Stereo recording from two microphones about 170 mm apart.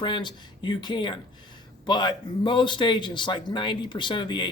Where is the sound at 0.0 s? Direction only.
25° left (ahead or behind).